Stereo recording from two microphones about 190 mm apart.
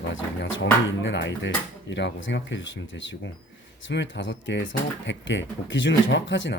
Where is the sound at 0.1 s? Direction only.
85° left.